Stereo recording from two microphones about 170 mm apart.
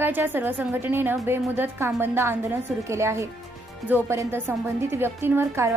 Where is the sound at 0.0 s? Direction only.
10° right (ahead or behind).